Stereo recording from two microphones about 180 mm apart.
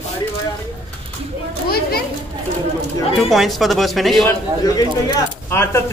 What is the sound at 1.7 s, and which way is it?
Children playing, 60° left (ahead or behind).